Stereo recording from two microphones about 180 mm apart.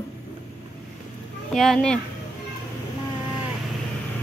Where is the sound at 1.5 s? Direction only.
Centre (ahead or behind).